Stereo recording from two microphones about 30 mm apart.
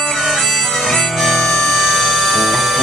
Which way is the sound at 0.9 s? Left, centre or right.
Centre.